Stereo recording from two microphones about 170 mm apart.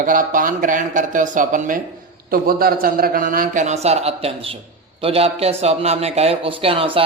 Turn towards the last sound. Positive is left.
turn(degrees=-35)  # may be behind; listen again after turning